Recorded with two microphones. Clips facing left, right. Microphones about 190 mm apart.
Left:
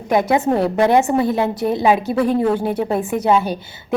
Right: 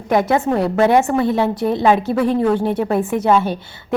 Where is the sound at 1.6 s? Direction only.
5° left (ahead or behind).